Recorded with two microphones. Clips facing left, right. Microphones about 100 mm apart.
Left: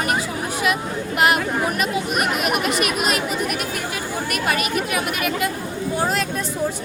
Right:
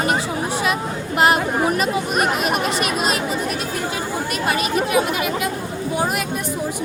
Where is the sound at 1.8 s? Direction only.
35° right (ahead or behind).